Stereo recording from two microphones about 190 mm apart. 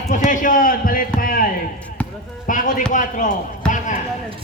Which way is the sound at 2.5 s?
45° left (ahead or behind).